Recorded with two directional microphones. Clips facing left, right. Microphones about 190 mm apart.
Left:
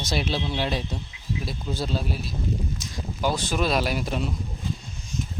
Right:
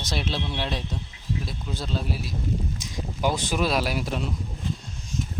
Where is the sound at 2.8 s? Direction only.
15° right (ahead or behind).